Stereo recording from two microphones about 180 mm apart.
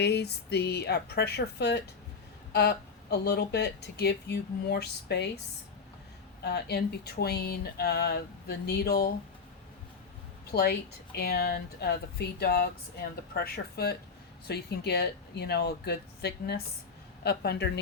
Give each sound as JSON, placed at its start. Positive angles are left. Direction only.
{"t": 0.0, "sound": "speech", "side_deg": 65}
{"t": 6.4, "sound": "speech", "side_deg": 65}
{"t": 10.5, "sound": "speech", "side_deg": 65}